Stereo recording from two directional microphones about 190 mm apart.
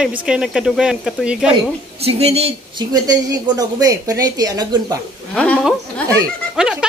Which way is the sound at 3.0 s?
20° right (ahead or behind).